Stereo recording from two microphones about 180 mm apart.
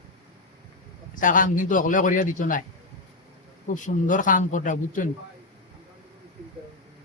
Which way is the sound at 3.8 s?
45° left (ahead or behind).